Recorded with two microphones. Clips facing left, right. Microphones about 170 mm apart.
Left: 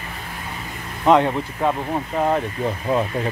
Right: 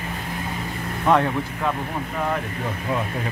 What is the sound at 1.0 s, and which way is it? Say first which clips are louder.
Speech: left 4 dB; 20° left (ahead or behind).